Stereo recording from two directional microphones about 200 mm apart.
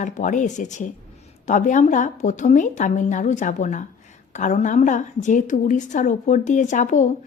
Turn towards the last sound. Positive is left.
turn(degrees=40)  # may be behind; listen again after turning